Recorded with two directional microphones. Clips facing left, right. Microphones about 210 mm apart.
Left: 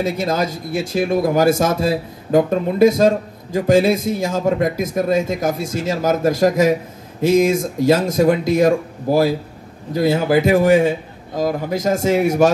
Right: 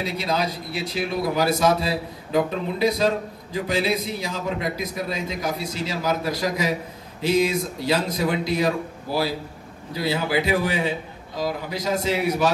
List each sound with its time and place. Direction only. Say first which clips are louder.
0.0 s speech: left 6 dB; 45° left (ahead or behind)